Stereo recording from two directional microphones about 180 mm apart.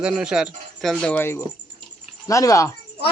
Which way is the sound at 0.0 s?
5° right (ahead or behind).